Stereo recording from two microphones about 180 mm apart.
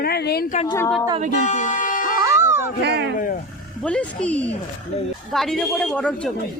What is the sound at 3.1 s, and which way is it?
Speech, 50° left (ahead or behind).